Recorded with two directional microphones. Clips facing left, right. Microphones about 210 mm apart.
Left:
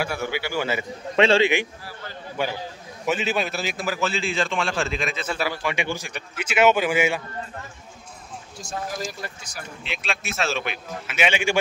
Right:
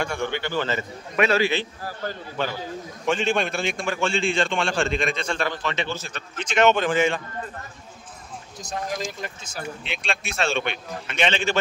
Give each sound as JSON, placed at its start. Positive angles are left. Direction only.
{"t": 0.0, "sound": "a man's voice", "side_deg": 5}
{"t": 1.1, "sound": "a man's voice", "side_deg": 25}
{"t": 1.8, "sound": "a man's voice", "side_deg": -45}
{"t": 2.4, "sound": "a man's voice", "side_deg": 10}
{"t": 9.8, "sound": "a man's voice", "side_deg": 0}